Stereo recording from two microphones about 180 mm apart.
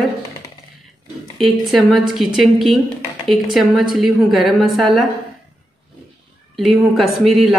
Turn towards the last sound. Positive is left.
turn(degrees=0)  # may be behind; listen again after turning